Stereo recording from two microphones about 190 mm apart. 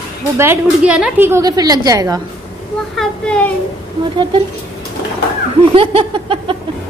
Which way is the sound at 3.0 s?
5° left (ahead or behind).